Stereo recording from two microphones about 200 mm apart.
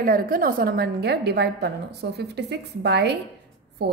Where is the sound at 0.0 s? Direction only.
45° right (ahead or behind).